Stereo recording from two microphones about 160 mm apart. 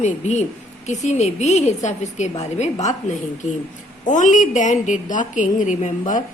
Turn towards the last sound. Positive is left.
turn(degrees=50)  # may be behind; listen again after turning